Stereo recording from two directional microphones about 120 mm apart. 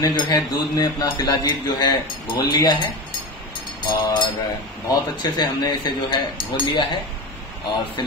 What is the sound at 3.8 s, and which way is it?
Speech, 45° left (ahead or behind).